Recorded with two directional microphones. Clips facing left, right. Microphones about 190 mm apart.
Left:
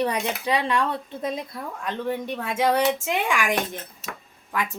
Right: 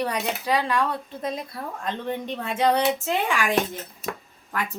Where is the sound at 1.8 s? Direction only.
10° left (ahead or behind).